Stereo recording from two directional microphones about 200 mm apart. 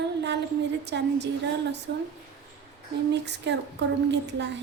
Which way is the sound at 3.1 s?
60° right (ahead or behind).